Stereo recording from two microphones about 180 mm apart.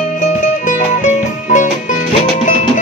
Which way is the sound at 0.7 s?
45° left (ahead or behind).